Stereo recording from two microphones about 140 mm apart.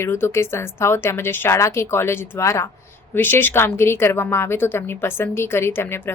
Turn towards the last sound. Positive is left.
turn(degrees=15)  # may be behind; listen again after turning